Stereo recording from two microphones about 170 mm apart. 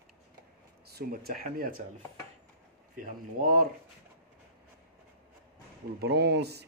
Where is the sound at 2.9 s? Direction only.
55° right (ahead or behind).